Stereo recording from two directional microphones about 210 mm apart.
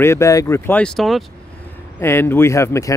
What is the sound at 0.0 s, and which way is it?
Speech, 15° left (ahead or behind).